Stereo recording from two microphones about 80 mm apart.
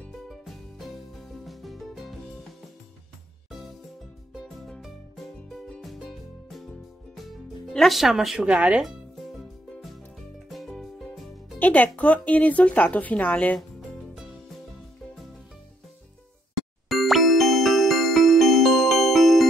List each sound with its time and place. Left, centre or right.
0.3 s music: centre
4.3 s music: centre
8.5 s speech: centre
9.4 s music: centre
11.5 s music: centre
12.0 s speech: centre
13.6 s music: centre
16.9 s music: centre